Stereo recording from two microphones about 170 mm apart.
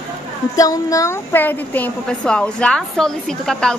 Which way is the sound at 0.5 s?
20° left (ahead or behind).